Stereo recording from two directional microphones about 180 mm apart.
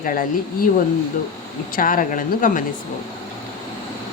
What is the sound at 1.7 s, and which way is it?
Speech, 50° left (ahead or behind).